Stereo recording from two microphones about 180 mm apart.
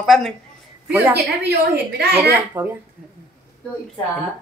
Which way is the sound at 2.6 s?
10° right (ahead or behind).